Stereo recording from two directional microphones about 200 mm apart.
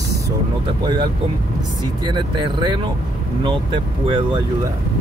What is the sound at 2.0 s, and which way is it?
Speech, 25° right (ahead or behind).